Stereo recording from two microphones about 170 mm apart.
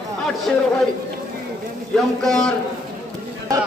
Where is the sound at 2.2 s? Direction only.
5° left (ahead or behind).